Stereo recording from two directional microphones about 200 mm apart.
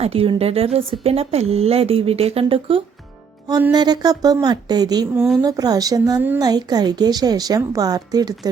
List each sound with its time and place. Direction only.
0.0 s a woman's voice: 30° right (ahead or behind)
5.1 s speech: 5° right (ahead or behind)
5.4 s a woman's voice: 20° right (ahead or behind)